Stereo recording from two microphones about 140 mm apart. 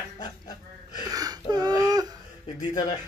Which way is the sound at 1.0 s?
25° right (ahead or behind).